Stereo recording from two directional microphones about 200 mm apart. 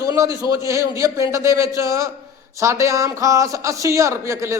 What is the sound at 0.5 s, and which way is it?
Speech, 15° right (ahead or behind).